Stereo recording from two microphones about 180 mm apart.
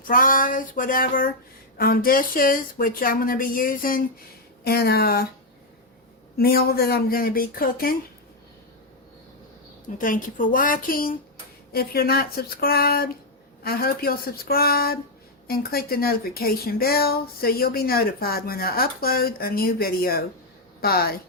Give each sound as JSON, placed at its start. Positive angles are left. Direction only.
{"t": 0.0, "sound": "speech", "side_deg": 50}
{"t": 6.3, "sound": "speech", "side_deg": 60}
{"t": 10.0, "sound": "speech", "side_deg": 50}